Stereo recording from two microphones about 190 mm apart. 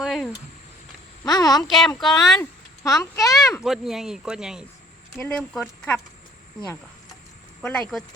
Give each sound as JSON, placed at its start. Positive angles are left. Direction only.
{"t": 0.0, "sound": "a sound", "side_deg": 0}
{"t": 1.2, "sound": "speech", "side_deg": 20}
{"t": 1.6, "sound": "speech", "side_deg": 0}
{"t": 2.4, "sound": "speech", "side_deg": 15}
{"t": 3.5, "sound": "speech", "side_deg": 0}
{"t": 7.6, "sound": "speech", "side_deg": 5}